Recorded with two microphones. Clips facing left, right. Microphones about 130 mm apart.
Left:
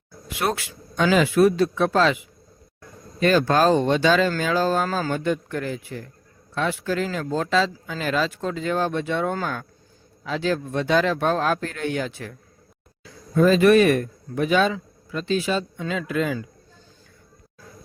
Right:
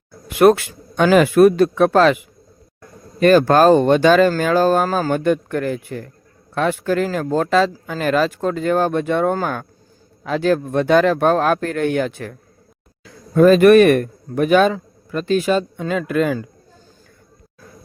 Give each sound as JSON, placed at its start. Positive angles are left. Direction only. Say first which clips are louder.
{"t": 0.3, "sound": "a man's voice", "louder": "right 13 dB", "side_deg": -55}